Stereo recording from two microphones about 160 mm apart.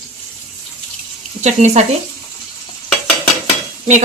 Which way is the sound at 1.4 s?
45° right (ahead or behind).